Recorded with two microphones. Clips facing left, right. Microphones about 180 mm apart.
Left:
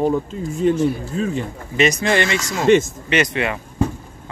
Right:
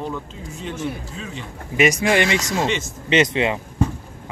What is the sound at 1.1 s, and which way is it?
Speech, 50° left (ahead or behind).